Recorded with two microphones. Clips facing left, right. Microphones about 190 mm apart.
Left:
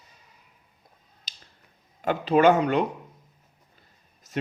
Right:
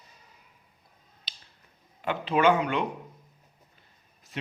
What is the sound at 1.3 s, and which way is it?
Finger snapping, 45° left (ahead or behind).